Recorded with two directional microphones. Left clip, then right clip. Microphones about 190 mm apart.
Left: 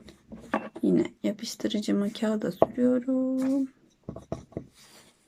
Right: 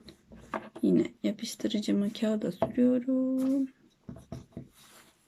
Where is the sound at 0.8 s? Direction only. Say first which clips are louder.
Even; 15° right (ahead or behind).